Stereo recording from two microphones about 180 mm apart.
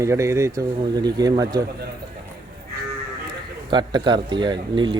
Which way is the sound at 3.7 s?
25° right (ahead or behind).